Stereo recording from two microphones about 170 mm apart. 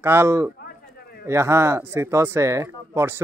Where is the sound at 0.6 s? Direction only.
65° left (ahead or behind).